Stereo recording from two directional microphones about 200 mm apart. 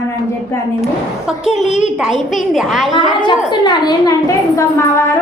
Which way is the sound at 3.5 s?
20° left (ahead or behind).